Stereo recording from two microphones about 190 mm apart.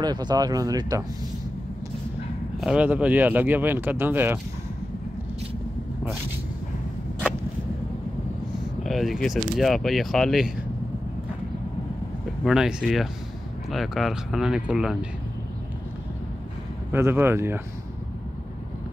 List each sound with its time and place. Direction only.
0.0 s speech: 20° right (ahead or behind)
2.6 s speech: 5° right (ahead or behind)
8.8 s speech: centre (ahead or behind)
12.4 s speech: centre (ahead or behind)
16.9 s speech: 10° right (ahead or behind)